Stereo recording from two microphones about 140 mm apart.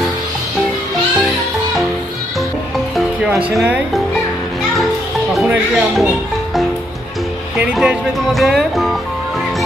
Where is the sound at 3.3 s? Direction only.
20° right (ahead or behind).